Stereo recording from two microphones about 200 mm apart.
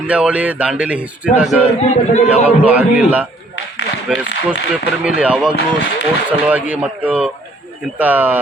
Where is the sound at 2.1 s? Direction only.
30° left (ahead or behind).